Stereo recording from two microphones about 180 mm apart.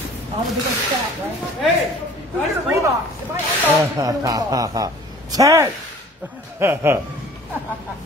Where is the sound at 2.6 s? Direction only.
15° right (ahead or behind).